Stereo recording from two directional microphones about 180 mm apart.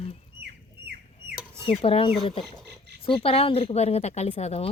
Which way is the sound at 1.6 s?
30° left (ahead or behind).